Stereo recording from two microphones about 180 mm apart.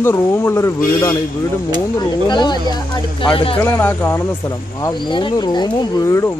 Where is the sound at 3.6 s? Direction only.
15° left (ahead or behind).